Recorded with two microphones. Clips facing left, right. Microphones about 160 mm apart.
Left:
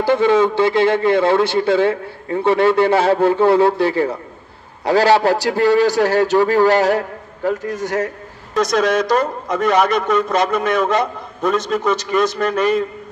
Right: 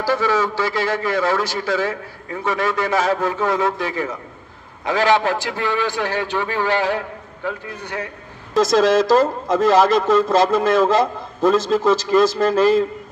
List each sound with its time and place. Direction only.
0.0 s a man's voice: 25° left (ahead or behind); by 8.1 s 45° left (ahead or behind)
8.5 s a man's voice: 25° right (ahead or behind)